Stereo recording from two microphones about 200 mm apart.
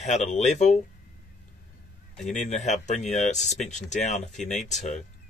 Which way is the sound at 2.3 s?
35° left (ahead or behind).